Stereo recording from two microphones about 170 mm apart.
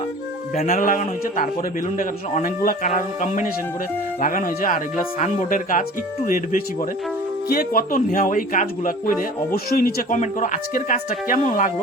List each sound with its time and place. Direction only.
0.5 s a man's voice: 45° left (ahead or behind)